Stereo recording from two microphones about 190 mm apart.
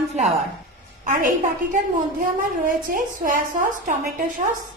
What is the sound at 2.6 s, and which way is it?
A woman's voice, 45° right (ahead or behind).